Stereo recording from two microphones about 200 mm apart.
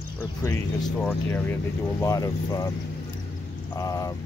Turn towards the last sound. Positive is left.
turn(degrees=15)  # may be behind; listen again after turning